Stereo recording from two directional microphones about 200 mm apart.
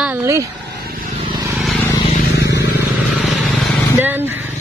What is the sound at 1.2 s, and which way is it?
Vehicle, 20° right (ahead or behind).